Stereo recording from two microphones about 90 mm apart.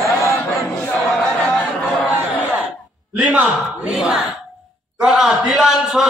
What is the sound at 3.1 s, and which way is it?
Speech, 15° right (ahead or behind).